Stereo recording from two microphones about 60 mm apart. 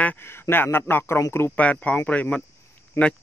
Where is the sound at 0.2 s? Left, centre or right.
Left.